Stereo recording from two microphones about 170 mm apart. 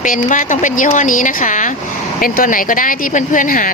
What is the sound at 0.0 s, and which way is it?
A woman's voice, 50° left (ahead or behind).